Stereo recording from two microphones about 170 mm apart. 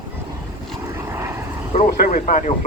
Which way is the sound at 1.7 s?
45° left (ahead or behind).